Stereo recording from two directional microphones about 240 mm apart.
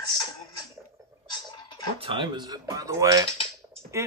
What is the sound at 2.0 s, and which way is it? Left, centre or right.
Speech, right.